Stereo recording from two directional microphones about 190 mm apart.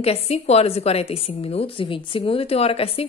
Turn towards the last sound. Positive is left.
turn(degrees=30)  # may be behind; listen again after turning